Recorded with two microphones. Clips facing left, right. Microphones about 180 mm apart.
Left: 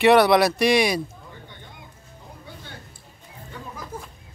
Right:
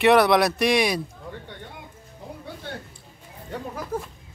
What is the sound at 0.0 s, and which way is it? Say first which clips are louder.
Speech: left 1 dB; centre (ahead or behind).